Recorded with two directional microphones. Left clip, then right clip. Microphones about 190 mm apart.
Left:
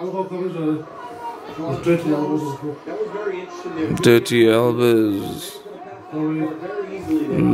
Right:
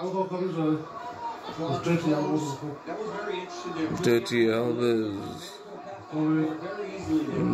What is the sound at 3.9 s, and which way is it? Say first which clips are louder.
Speech: left 10 dB; 50° left (ahead or behind).